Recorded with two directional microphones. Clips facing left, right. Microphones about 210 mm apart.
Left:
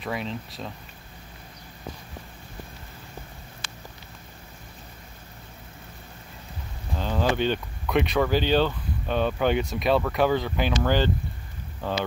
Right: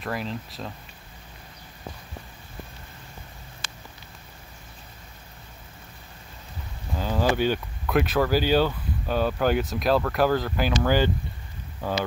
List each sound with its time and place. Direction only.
0.0 s speech: centre (ahead or behind)
3.6 s a sound: 40° right (ahead or behind)
7.0 s speech: 5° right (ahead or behind)